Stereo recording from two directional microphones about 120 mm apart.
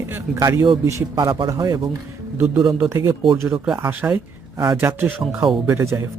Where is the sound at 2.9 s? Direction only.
25° right (ahead or behind).